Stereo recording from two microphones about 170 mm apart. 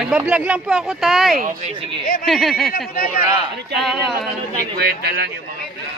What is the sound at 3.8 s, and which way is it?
Speech, centre (ahead or behind).